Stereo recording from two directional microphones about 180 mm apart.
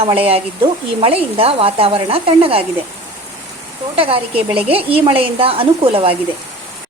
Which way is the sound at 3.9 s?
30° right (ahead or behind).